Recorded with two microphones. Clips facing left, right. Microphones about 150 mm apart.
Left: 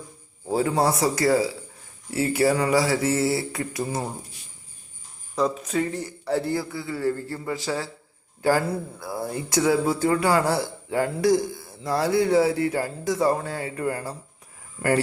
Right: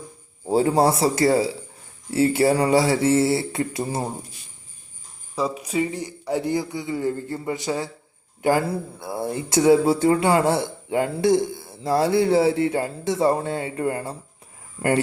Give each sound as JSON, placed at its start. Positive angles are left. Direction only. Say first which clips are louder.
{"t": 0.4, "sound": "speech", "louder": "right 4 dB", "side_deg": -30}
{"t": 5.3, "sound": "a man's voice", "louder": "left 1 dB", "side_deg": -10}